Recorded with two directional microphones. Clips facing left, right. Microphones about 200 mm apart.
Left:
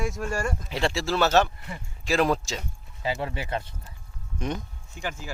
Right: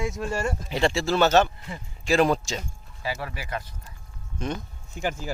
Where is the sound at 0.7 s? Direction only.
Centre (ahead or behind).